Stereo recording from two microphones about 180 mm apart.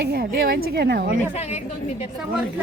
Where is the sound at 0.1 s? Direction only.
60° right (ahead or behind).